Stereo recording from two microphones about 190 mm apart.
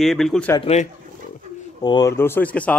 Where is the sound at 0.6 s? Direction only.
35° left (ahead or behind).